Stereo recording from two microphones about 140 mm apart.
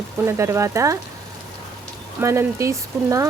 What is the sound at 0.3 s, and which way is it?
Speech, 20° right (ahead or behind).